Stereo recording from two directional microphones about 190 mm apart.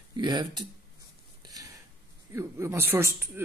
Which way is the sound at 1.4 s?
20° right (ahead or behind).